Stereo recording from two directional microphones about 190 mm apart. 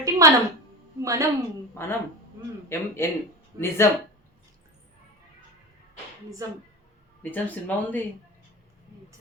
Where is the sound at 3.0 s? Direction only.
15° left (ahead or behind).